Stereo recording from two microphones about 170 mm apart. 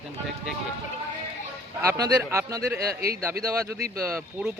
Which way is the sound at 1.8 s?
20° right (ahead or behind).